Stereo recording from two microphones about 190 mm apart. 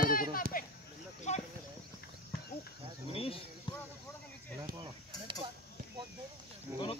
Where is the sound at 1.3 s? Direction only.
40° left (ahead or behind).